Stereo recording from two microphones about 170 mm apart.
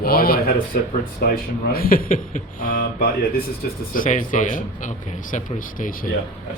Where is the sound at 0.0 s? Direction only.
60° left (ahead or behind).